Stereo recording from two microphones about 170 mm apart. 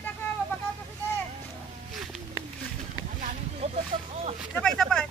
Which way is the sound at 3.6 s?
40° right (ahead or behind).